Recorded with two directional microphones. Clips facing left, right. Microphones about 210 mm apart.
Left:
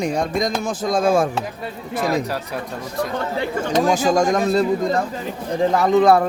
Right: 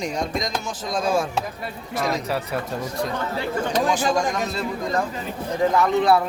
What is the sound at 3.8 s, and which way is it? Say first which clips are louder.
Chopping: left 5 dB; 45° left (ahead or behind).